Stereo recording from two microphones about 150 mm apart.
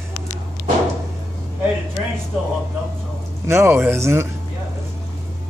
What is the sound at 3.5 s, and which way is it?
Speech, 15° right (ahead or behind).